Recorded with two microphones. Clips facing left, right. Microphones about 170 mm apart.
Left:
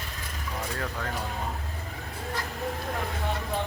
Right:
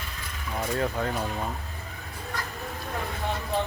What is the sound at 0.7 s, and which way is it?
Speech, 20° right (ahead or behind).